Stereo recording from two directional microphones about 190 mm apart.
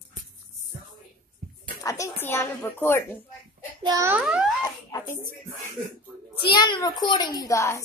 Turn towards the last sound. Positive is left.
turn(degrees=15)  # may be behind; listen again after turning